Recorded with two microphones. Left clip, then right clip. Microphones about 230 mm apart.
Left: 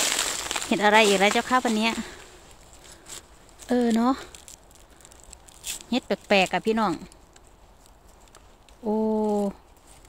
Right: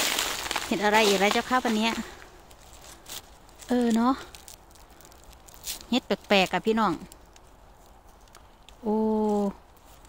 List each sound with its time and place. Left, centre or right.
0.0 s a sound: centre
0.7 s speech: left
3.5 s speech: centre
5.9 s speech: centre
8.8 s speech: centre